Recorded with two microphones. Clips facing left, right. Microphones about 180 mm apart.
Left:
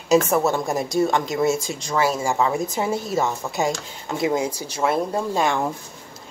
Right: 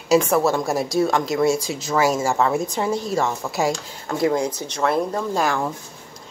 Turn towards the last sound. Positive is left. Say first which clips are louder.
# even
turn(degrees=0)  # may be behind; listen again after turning